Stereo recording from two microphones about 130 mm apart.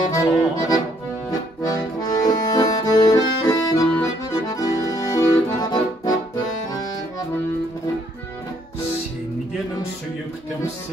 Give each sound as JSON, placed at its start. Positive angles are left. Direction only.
{"t": 0.0, "sound": "music", "side_deg": 25}
{"t": 1.7, "sound": "accordion", "side_deg": 30}